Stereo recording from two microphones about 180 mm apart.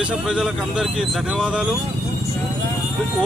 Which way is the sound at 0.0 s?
5° right (ahead or behind).